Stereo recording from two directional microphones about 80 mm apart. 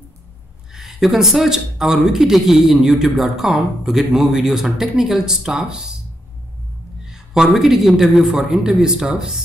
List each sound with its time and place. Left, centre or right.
0.7 s speech: centre
7.1 s a man's voice: centre